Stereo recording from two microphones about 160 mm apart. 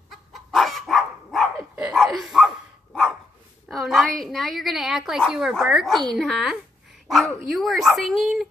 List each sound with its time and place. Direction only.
0.1 s dog: centre (ahead or behind)
3.6 s a woman's voice: centre (ahead or behind)